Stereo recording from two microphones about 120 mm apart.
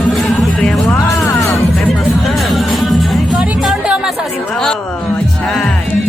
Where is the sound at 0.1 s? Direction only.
Centre (ahead or behind).